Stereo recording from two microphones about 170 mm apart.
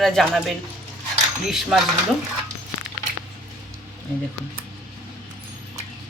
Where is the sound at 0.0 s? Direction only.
Centre (ahead or behind).